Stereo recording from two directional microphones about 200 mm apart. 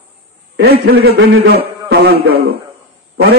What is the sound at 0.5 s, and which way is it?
A man's voice, 50° right (ahead or behind).